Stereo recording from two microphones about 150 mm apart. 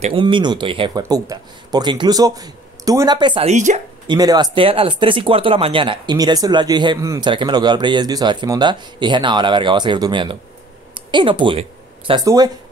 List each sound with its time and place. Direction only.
0.0 s speech: 35° right (ahead or behind)
3.4 s speech: 50° right (ahead or behind)
4.1 s speech: 25° right (ahead or behind)